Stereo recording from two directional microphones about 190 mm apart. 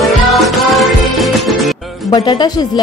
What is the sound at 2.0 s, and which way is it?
Music, 20° left (ahead or behind).